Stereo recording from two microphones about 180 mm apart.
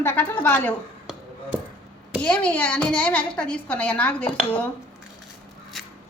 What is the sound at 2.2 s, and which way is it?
A woman's voice, 5° left (ahead or behind).